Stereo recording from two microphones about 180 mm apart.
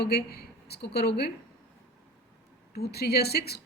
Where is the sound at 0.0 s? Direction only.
65° left (ahead or behind).